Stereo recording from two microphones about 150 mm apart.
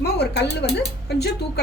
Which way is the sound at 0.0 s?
90° left.